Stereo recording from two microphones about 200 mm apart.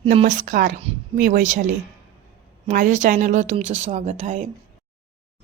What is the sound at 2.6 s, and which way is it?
Speech, 40° right (ahead or behind).